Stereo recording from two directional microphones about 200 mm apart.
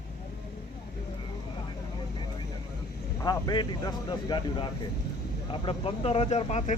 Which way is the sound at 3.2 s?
20° left (ahead or behind).